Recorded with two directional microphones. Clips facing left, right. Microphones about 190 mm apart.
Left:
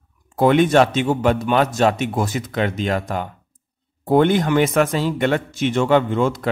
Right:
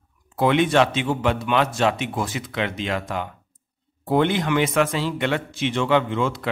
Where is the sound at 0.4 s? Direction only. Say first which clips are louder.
Left 4 dB; 45° left (ahead or behind).